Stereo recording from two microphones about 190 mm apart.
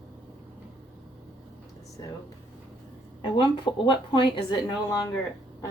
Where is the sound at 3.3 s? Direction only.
25° left (ahead or behind).